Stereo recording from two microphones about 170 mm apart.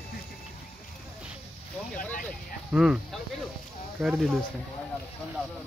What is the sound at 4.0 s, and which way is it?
Speech, 5° right (ahead or behind).